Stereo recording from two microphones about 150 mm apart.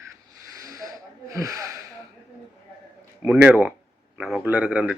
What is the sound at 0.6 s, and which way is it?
Snake, 25° right (ahead or behind).